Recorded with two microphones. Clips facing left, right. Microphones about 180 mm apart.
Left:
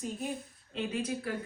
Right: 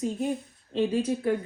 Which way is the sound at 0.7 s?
30° right (ahead or behind).